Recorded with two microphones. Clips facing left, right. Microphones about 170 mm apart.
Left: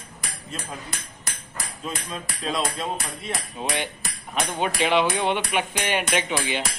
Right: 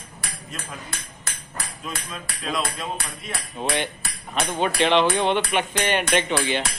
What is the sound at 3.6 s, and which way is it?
Cutlery, 10° left (ahead or behind).